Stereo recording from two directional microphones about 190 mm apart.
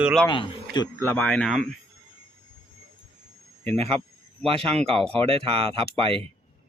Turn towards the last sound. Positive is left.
turn(degrees=-30)  # may be behind; listen again after turning